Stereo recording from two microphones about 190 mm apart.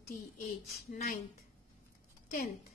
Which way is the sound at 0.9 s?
45° left (ahead or behind).